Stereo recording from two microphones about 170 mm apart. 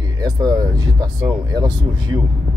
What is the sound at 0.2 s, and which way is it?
Speech, 20° right (ahead or behind).